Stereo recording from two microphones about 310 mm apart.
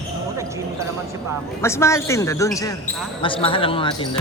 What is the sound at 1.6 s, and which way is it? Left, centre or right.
Speech, centre.